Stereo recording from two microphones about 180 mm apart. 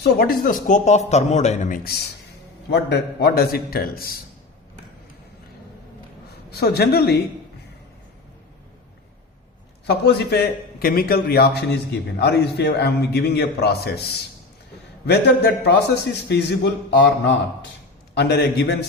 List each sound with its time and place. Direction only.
0.0 s speech: 60° left (ahead or behind); by 1.8 s 40° left (ahead or behind)
2.6 s a man's voice: 70° left (ahead or behind)
6.5 s a man's voice: 65° left (ahead or behind)
9.8 s a man's voice: 65° left (ahead or behind)
15.0 s a man's voice: 65° left (ahead or behind)